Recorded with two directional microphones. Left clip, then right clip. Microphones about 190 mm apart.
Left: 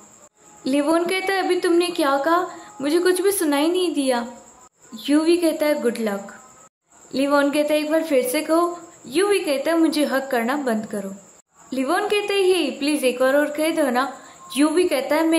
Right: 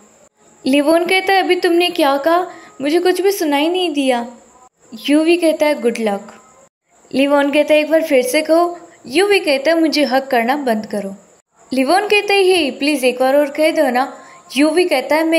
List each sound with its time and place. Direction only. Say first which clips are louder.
0.7 s a woman's voice: right 7 dB; 20° right (ahead or behind)
7.2 s a woman's voice: right 6 dB; 15° right (ahead or behind)